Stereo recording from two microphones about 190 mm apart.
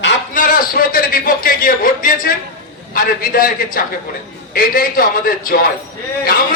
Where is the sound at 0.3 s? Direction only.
50° left (ahead or behind).